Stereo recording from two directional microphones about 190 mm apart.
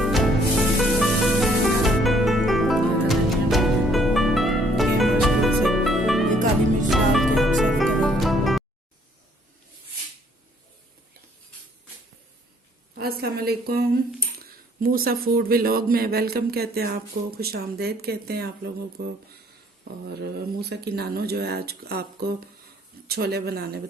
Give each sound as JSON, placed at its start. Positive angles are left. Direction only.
{"t": 0.0, "sound": "music", "side_deg": 0}
{"t": 12.9, "sound": "a sound", "side_deg": -55}
{"t": 14.8, "sound": "speech", "side_deg": -50}
{"t": 20.1, "sound": "speech", "side_deg": -60}